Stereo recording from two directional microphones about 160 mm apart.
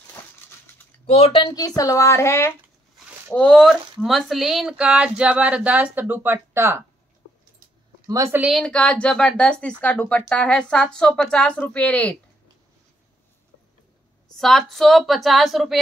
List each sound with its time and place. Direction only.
1.0 s speech: 40° left (ahead or behind)
1.8 s a woman's voice: 20° left (ahead or behind)
3.3 s speech: 5° left (ahead or behind); by 6.8 s 15° right (ahead or behind)
8.1 s speech: 15° right (ahead or behind)
8.5 s a woman's voice: 5° left (ahead or behind)
14.3 s a woman's voice: centre (ahead or behind)